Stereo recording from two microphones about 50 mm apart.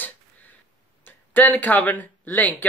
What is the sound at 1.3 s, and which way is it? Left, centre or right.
Speech, left.